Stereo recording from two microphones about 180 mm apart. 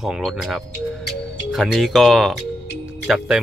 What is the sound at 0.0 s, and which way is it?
Speech, centre (ahead or behind).